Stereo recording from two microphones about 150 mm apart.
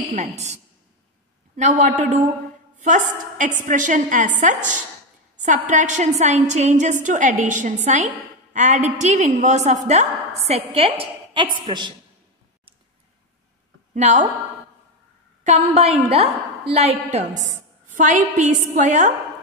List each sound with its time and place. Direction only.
1.6 s a woman's voice: 55° right (ahead or behind); by 11.9 s 30° right (ahead or behind)
13.9 s a woman's voice: 55° right (ahead or behind)
15.4 s a woman's voice: 50° right (ahead or behind)